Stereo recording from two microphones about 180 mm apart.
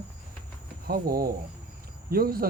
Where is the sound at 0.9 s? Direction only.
55° right (ahead or behind).